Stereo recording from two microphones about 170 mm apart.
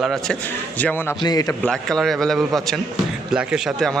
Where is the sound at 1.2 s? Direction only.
25° left (ahead or behind).